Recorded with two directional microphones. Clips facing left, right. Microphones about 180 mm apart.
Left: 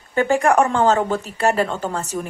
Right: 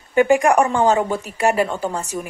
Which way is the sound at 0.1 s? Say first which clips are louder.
Right 2 dB; 15° right (ahead or behind).